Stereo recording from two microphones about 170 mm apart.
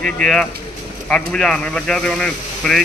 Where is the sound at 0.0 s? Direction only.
5° left (ahead or behind).